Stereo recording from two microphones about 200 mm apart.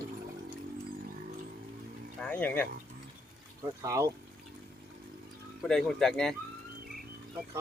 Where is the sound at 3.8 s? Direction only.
15° right (ahead or behind).